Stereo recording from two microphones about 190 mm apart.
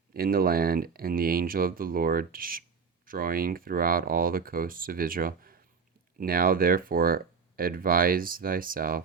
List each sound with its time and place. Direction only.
0.1 s speech: 50° right (ahead or behind)